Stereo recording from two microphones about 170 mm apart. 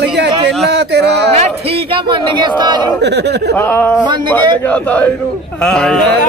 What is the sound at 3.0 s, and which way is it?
Speech, 80° right.